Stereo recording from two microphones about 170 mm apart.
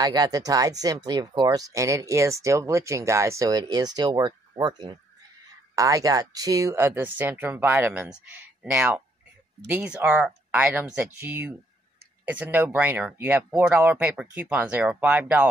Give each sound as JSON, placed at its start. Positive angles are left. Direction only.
{"t": 0.0, "sound": "speech", "side_deg": -20}